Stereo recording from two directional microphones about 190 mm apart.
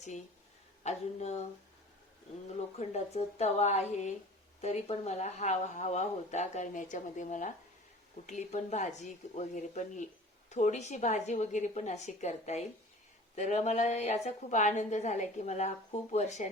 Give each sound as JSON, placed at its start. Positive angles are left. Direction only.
{"t": 0.9, "sound": "a woman's voice", "side_deg": 35}
{"t": 2.5, "sound": "a woman's voice", "side_deg": 35}